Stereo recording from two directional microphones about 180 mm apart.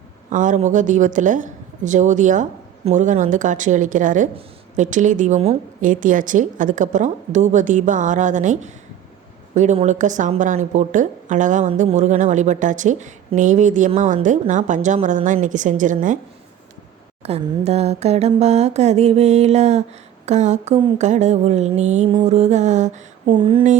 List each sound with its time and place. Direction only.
0.3 s a woman's voice: 45° right (ahead or behind)
17.2 s a sound: 35° right (ahead or behind)
23.2 s speech: 30° right (ahead or behind)